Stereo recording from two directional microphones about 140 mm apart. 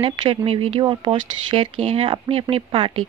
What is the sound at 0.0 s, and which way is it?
Speech, 40° right (ahead or behind).